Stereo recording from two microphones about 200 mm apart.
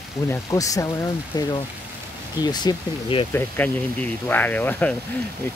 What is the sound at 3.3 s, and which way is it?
Speech, 10° left (ahead or behind).